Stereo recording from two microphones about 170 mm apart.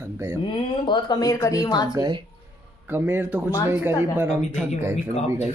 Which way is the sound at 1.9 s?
25° right (ahead or behind).